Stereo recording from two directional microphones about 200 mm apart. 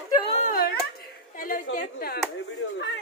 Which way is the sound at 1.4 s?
45° left (ahead or behind).